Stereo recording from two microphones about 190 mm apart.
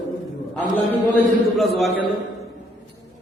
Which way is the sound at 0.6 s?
10° left (ahead or behind).